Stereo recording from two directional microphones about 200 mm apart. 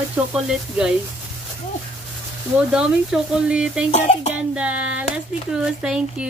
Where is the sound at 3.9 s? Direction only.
35° left (ahead or behind).